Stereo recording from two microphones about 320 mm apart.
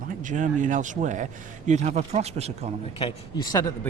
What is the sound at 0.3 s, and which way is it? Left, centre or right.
Speech, right.